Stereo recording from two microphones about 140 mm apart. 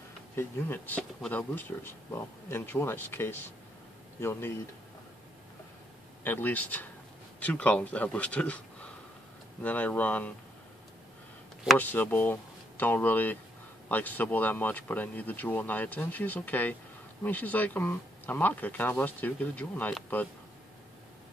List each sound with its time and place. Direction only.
0.4 s speech: 15° left (ahead or behind)
6.2 s speech: 15° left (ahead or behind)
11.8 s speech: 15° left (ahead or behind)